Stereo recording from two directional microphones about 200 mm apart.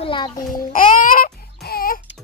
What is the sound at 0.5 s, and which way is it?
Babbling, 45° left (ahead or behind).